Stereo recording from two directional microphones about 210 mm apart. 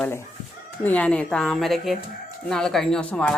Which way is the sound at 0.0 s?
10° left (ahead or behind).